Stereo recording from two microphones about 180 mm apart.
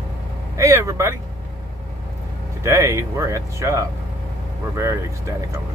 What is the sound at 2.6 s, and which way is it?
Speech, 15° right (ahead or behind).